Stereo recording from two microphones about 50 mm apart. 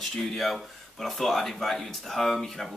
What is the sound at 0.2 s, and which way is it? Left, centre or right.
Speech, centre.